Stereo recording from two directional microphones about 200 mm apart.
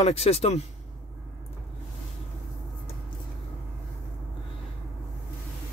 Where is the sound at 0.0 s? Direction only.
30° left (ahead or behind).